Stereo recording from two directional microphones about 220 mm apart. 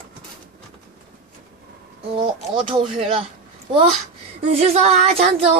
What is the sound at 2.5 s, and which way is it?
Speech, 20° right (ahead or behind).